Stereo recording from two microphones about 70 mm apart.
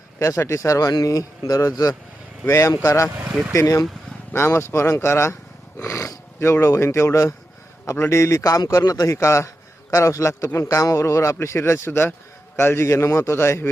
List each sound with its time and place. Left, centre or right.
0.2 s speech: left
2.5 s a man's voice: left
4.3 s speech: left
9.1 s a man's voice: left